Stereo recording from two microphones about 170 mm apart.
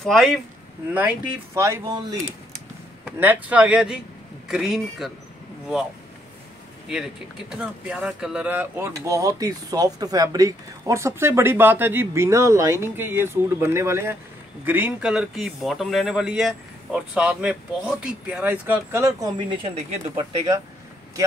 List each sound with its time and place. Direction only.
0.0 s a man's voice: centre (ahead or behind)
0.9 s speech: 15° right (ahead or behind)
3.1 s a man's voice: 10° right (ahead or behind)
7.5 s speech: 5° right (ahead or behind); by 20.2 s 35° right (ahead or behind)